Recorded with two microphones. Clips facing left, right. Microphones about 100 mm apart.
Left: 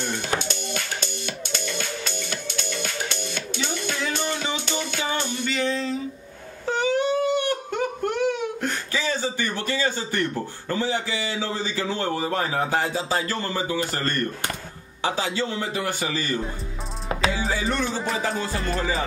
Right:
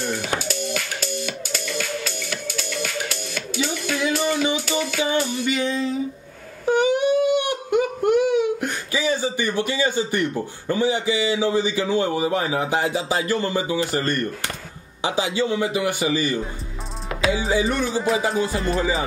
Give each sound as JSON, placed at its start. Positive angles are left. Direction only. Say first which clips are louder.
{"t": 0.1, "sound": "music", "louder": "right 2 dB", "side_deg": -5}
{"t": 2.2, "sound": "music", "louder": "right 2 dB", "side_deg": 30}
{"t": 3.1, "sound": "music", "louder": "right 1 dB", "side_deg": -5}
{"t": 6.6, "sound": "a man's voice", "louder": "right 4 dB", "side_deg": -15}
{"t": 17.6, "sound": "a man's voice", "louder": "right 4 dB", "side_deg": -5}